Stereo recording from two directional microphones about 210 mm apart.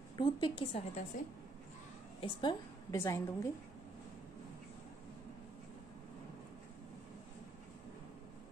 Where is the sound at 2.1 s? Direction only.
20° left (ahead or behind).